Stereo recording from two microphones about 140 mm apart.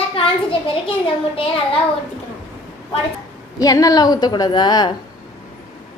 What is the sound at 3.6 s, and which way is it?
A woman's voice, 25° left (ahead or behind).